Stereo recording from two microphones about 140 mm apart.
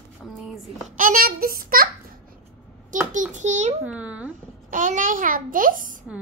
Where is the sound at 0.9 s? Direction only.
80° right.